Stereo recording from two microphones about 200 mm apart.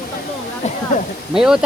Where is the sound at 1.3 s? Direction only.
5° right (ahead or behind).